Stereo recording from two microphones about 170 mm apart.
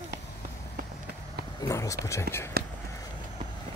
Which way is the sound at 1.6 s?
20° left (ahead or behind).